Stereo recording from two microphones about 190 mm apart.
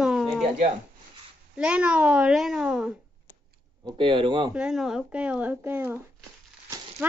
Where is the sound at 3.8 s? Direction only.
25° right (ahead or behind).